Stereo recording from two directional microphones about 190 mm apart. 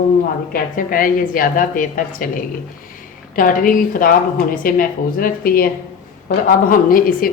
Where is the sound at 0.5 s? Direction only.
45° left (ahead or behind).